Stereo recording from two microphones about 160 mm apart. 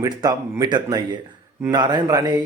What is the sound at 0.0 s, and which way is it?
Speech, 20° right (ahead or behind).